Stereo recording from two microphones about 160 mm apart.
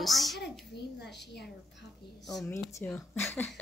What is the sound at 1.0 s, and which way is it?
Speech, 90° left.